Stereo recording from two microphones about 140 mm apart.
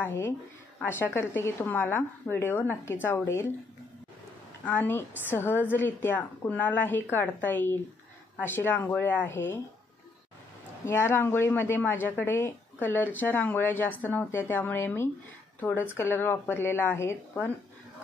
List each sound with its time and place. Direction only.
0.0 s a woman's voice: 20° left (ahead or behind)
4.6 s a woman's voice: 15° left (ahead or behind)
10.9 s a woman's voice: 20° left (ahead or behind)